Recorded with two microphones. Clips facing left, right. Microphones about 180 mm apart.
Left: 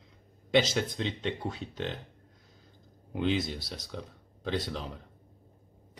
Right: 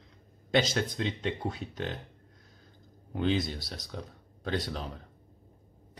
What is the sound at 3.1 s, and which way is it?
Speech, centre (ahead or behind).